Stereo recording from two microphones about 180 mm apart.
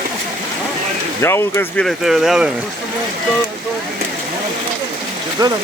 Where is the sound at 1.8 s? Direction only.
Centre (ahead or behind).